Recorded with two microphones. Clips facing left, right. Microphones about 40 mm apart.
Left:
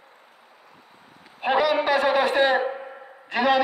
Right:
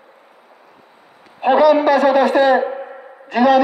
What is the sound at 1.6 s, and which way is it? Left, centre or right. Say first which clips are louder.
A man's voice: right 10 dB; centre.